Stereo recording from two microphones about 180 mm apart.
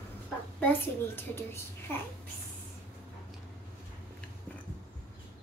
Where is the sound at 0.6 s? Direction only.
10° left (ahead or behind).